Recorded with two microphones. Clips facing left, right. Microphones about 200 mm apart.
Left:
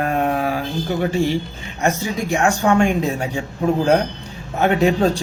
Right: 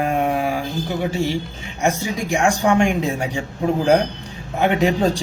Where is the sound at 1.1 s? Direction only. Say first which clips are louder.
Left 4 dB; 55° left (ahead or behind).